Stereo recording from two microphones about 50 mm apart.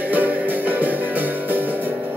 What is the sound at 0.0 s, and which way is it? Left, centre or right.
Music, right.